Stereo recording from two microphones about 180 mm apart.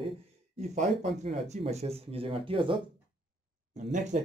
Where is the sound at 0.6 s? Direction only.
40° right (ahead or behind).